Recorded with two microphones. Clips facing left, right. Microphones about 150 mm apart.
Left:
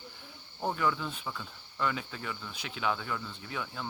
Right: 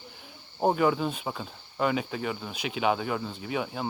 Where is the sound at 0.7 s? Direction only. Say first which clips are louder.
Right 5 dB; 75° right (ahead or behind).